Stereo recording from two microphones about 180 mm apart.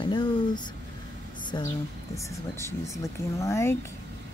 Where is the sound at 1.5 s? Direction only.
25° left (ahead or behind).